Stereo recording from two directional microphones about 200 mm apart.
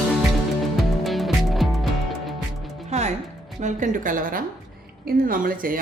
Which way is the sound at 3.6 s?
40° right (ahead or behind).